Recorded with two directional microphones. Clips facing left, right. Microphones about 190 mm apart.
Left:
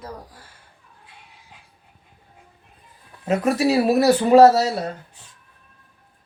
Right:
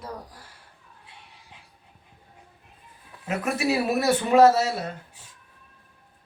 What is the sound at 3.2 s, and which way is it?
A man's voice, 35° left (ahead or behind).